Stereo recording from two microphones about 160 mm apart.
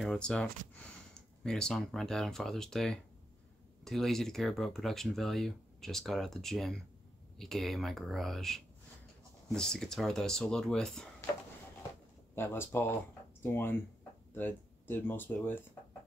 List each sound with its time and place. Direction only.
0.0 s speech: 5° left (ahead or behind)
12.4 s speech: 15° left (ahead or behind)